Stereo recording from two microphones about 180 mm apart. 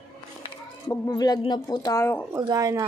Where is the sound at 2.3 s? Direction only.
20° right (ahead or behind).